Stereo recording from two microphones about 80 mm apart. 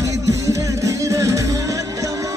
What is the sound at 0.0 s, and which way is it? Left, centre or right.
Music, right.